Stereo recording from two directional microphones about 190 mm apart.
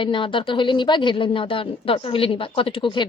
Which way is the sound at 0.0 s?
25° left (ahead or behind).